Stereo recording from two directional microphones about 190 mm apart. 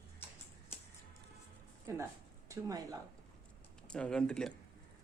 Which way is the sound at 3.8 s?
5° left (ahead or behind).